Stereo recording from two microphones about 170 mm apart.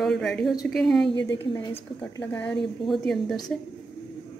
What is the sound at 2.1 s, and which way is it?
A woman's voice, 10° left (ahead or behind).